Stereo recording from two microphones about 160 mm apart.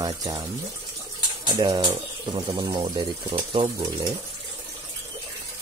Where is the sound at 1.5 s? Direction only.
25° right (ahead or behind).